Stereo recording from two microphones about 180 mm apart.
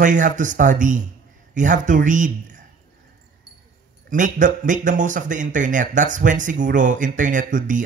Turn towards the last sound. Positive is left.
turn(degrees=-45)  # may be behind; listen again after turning